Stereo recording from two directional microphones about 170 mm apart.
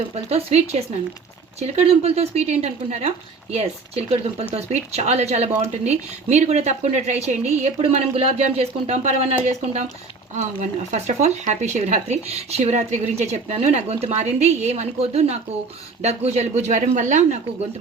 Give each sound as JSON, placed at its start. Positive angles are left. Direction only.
{"t": 0.1, "sound": "speech", "side_deg": -40}